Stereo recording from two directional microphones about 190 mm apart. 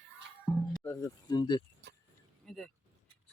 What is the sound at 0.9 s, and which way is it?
Speech, 20° left (ahead or behind).